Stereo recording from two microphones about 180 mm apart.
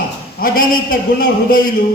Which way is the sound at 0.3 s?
50° left (ahead or behind).